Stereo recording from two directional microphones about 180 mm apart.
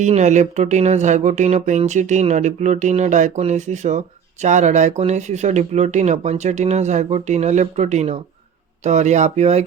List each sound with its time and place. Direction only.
0.0 s speech: 40° right (ahead or behind)